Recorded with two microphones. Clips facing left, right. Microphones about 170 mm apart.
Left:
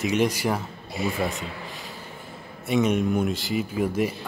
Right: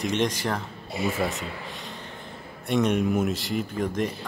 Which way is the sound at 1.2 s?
Centre (ahead or behind).